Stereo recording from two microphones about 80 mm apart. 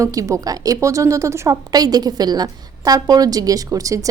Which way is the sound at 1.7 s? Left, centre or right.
Right.